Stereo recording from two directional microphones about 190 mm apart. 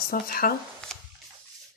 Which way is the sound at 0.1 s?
50° left (ahead or behind).